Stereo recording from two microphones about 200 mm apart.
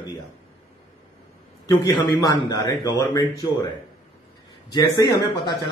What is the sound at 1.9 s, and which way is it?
Speech, 20° left (ahead or behind).